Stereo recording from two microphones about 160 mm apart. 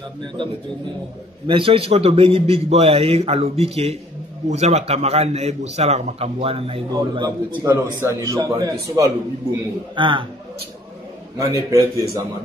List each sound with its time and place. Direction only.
1.5 s a man's voice: 35° right (ahead or behind)
7.2 s a man's voice: 25° right (ahead or behind)
11.3 s a man's voice: 20° right (ahead or behind)